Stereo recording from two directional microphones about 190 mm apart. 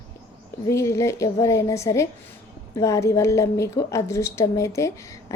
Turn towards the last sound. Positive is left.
turn(degrees=15)  # may be behind; listen again after turning